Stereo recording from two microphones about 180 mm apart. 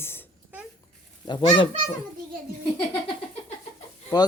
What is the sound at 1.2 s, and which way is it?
Speech, 25° left (ahead or behind).